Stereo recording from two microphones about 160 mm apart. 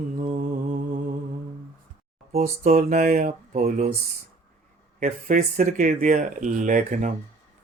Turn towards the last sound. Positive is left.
turn(degrees=-55)  # may be behind; listen again after turning